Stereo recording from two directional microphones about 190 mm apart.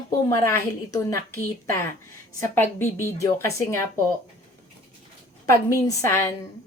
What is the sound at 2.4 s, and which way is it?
Speech, 15° left (ahead or behind).